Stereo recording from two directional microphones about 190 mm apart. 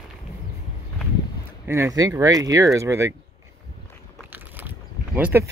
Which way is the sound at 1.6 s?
15° right (ahead or behind).